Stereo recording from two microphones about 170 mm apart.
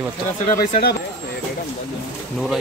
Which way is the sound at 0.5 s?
65° left (ahead or behind).